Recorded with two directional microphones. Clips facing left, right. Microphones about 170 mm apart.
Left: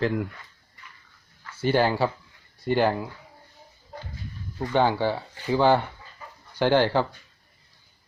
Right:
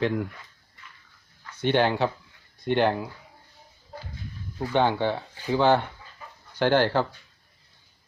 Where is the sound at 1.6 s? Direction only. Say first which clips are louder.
Even; 5° left (ahead or behind).